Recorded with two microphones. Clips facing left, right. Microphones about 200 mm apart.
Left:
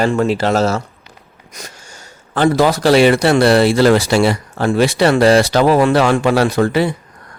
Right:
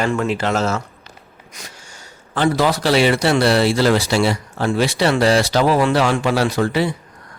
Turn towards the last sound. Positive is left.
turn(degrees=55)  # may be behind; listen again after turning